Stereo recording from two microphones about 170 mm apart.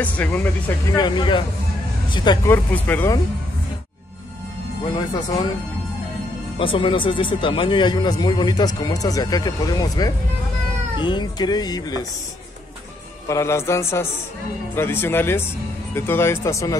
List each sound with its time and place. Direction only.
0.0 s speech: 10° left (ahead or behind)
0.9 s speech: 25° left (ahead or behind)
2.4 s speech: 10° left (ahead or behind)
6.6 s speech: 30° left (ahead or behind)
13.3 s speech: 15° left (ahead or behind)